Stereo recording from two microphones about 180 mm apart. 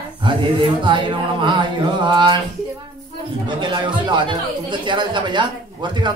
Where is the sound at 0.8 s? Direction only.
25° right (ahead or behind).